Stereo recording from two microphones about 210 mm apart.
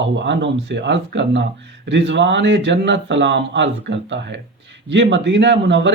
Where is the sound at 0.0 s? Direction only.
60° right (ahead or behind).